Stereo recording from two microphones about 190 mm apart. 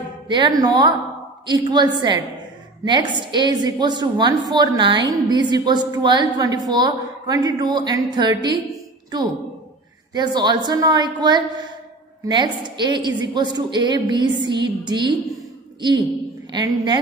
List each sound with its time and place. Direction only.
0.3 s a woman's voice: 20° right (ahead or behind)
10.1 s a woman's voice: 20° right (ahead or behind)
14.9 s a sound: 20° right (ahead or behind)
16.5 s a woman's voice: 20° right (ahead or behind)